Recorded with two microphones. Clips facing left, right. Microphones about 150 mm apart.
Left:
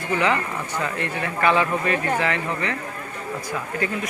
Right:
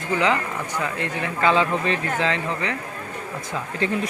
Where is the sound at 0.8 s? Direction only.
15° right (ahead or behind).